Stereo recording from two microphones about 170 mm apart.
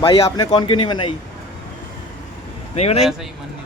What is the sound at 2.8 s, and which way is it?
Speech, 35° left (ahead or behind).